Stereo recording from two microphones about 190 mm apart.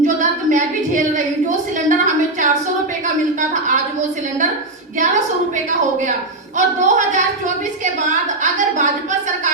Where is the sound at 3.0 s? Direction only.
40° right (ahead or behind).